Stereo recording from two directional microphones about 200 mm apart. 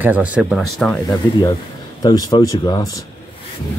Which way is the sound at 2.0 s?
20° left (ahead or behind).